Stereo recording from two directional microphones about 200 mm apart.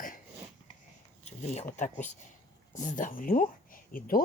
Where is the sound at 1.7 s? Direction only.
35° left (ahead or behind).